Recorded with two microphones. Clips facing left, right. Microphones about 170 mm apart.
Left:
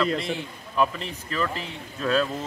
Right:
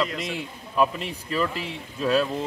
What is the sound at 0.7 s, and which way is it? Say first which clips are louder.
Speech: right 1 dB; 10° right (ahead or behind).